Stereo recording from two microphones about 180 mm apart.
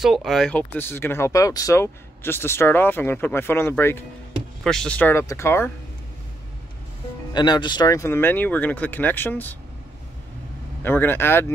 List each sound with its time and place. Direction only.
0.0 s speech: centre (ahead or behind); by 5.7 s 15° left (ahead or behind)
7.3 s speech: 25° left (ahead or behind)
10.8 s speech: 10° left (ahead or behind)